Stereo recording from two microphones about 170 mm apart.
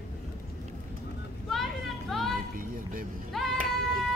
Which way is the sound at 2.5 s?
55° right (ahead or behind).